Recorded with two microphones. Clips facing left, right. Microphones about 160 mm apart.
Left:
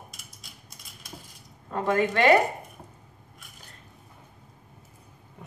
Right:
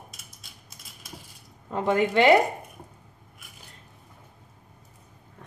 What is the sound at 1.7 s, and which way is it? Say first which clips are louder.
Speech: right 1 dB; 20° right (ahead or behind).